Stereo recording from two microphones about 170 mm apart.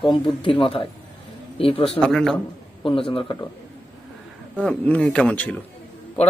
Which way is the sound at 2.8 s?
30° left (ahead or behind).